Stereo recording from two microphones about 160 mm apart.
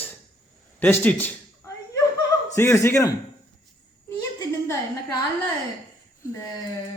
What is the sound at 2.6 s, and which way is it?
Speech, 15° left (ahead or behind).